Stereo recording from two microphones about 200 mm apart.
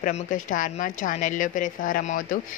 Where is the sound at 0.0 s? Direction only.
40° left (ahead or behind).